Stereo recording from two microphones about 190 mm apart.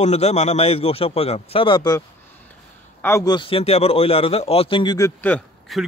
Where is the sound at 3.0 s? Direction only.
15° left (ahead or behind).